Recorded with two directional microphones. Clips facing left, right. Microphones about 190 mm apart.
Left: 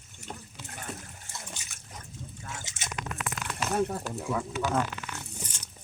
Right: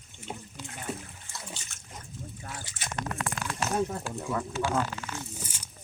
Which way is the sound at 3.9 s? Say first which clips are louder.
Left 1 dB; centre (ahead or behind).